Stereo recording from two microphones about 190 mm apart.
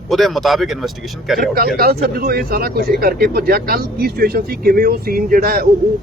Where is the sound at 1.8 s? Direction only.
55° right (ahead or behind).